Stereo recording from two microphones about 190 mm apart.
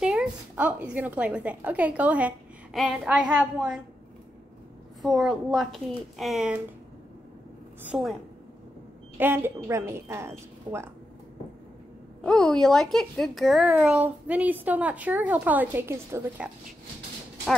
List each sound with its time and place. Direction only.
0.0 s a woman's voice: 5° right (ahead or behind)
5.0 s speech: centre (ahead or behind)
7.8 s speech: 5° right (ahead or behind)
9.2 s a child's voice: 10° right (ahead or behind)
12.2 s a child's voice: 5° left (ahead or behind); by 16.4 s 15° right (ahead or behind)